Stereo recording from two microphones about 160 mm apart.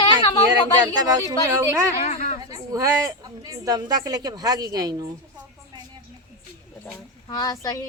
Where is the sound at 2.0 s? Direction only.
60° left (ahead or behind).